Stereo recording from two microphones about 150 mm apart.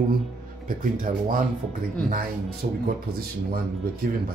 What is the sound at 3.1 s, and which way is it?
Speech, 85° right.